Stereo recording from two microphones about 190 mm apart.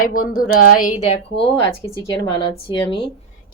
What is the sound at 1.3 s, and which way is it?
Speech, 65° left (ahead or behind).